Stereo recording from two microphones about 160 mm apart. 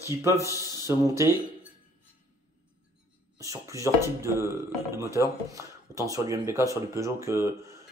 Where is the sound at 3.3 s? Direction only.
20° right (ahead or behind).